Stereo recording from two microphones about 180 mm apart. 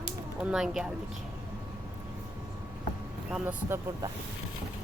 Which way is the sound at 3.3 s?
10° right (ahead or behind).